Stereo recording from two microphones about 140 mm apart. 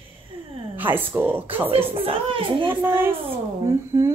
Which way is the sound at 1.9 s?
40° right (ahead or behind).